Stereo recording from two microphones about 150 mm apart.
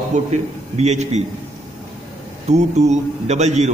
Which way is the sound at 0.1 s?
50° right (ahead or behind).